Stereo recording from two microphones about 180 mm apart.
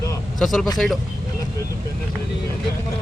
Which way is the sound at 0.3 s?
Centre (ahead or behind).